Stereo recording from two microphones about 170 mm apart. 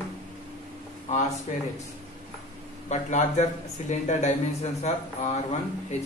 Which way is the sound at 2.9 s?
40° left (ahead or behind).